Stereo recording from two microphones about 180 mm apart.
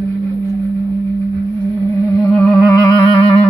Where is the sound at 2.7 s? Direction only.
20° left (ahead or behind).